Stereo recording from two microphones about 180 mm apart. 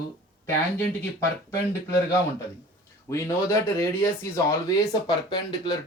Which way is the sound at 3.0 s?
15° left (ahead or behind).